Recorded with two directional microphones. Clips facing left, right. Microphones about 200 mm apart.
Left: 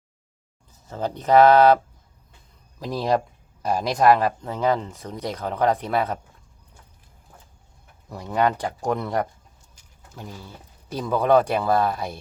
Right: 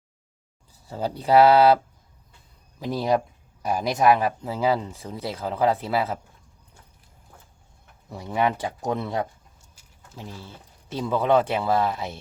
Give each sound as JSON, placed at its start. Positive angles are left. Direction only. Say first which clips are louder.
{"t": 0.9, "sound": "speech", "louder": "left 1 dB", "side_deg": -10}
{"t": 2.8, "sound": "speech", "louder": "even", "side_deg": 0}
{"t": 8.3, "sound": "speech", "louder": "left 2 dB", "side_deg": -5}
{"t": 8.5, "sound": "speech", "louder": "left 2 dB", "side_deg": -25}
{"t": 10.9, "sound": "speech", "louder": "left 2 dB", "side_deg": 0}